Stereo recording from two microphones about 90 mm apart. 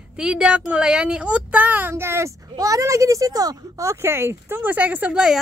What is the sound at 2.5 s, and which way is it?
Speech, 40° right (ahead or behind).